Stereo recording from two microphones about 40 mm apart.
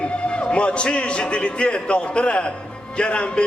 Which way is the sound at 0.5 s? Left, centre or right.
Left.